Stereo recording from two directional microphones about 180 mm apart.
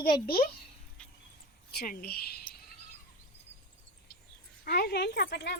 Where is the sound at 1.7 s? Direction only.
60° left (ahead or behind).